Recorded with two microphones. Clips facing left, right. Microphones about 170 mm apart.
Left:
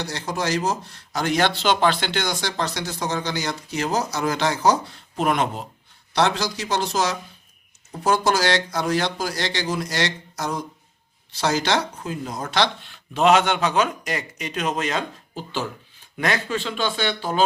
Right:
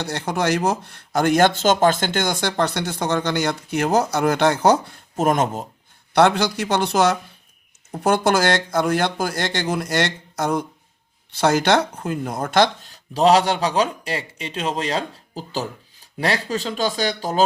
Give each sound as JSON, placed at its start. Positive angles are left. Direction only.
{"t": 0.0, "sound": "speech", "side_deg": -60}
{"t": 6.1, "sound": "speech", "side_deg": -55}